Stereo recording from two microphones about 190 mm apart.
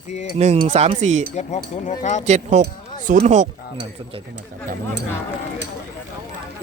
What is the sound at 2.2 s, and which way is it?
Speech, 40° right (ahead or behind).